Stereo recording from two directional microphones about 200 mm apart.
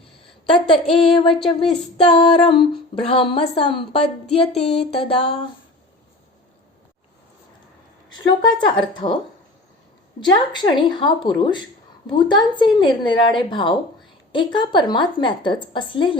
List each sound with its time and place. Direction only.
0.7 s speech: 25° left (ahead or behind)
8.1 s speech: 20° left (ahead or behind)
10.2 s speech: 20° left (ahead or behind)